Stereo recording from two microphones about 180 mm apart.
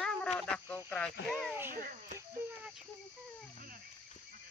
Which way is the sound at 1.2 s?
5° left (ahead or behind).